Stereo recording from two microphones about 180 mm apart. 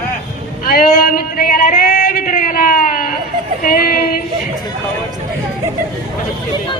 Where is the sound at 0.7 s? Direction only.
55° left (ahead or behind).